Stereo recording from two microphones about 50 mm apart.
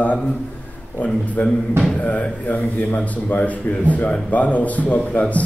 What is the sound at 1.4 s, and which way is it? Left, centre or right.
Speech, left.